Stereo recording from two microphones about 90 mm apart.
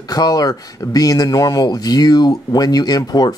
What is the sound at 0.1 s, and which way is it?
Speech, 45° left (ahead or behind).